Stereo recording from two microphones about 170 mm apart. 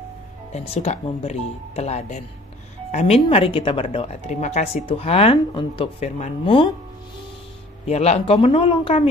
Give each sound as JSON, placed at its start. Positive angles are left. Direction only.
{"t": 0.5, "sound": "a woman's voice", "side_deg": 40}
{"t": 7.9, "sound": "a woman's voice", "side_deg": 40}